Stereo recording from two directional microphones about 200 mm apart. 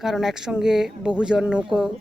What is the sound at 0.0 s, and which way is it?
Speech, centre (ahead or behind).